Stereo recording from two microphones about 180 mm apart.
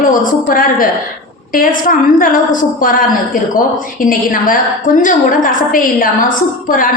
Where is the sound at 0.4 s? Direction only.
50° left (ahead or behind).